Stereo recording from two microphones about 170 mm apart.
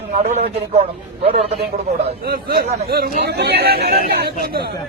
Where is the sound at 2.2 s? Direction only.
60° right (ahead or behind).